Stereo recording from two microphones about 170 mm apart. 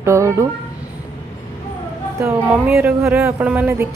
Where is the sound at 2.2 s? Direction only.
10° right (ahead or behind).